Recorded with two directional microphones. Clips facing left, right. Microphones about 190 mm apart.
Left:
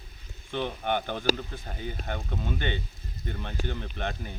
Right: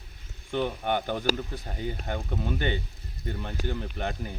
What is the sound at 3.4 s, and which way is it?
Speech, 10° right (ahead or behind).